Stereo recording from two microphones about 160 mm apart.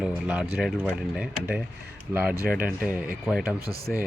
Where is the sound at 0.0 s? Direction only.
5° right (ahead or behind).